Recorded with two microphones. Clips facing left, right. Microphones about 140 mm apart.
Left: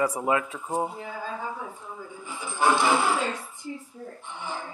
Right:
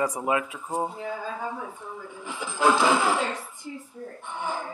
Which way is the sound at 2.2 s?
90° right.